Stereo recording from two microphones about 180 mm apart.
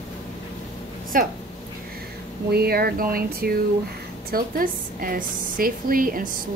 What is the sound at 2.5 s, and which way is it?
A woman's voice, 60° right (ahead or behind).